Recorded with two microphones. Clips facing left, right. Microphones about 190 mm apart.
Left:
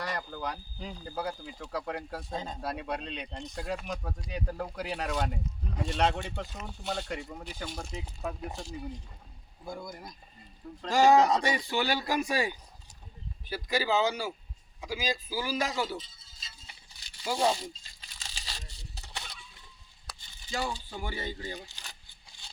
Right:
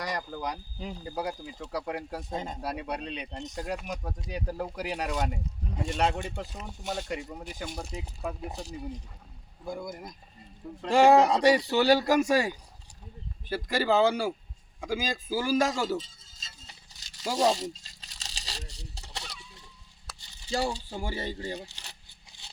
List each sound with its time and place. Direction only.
0.0 s speech: 15° right (ahead or behind)
9.9 s a man's voice: 20° right (ahead or behind); by 16.0 s 45° right (ahead or behind)
16.4 s a sound: 40° right (ahead or behind)
18.6 s honk: 80° right
20.5 s speech: 35° right (ahead or behind)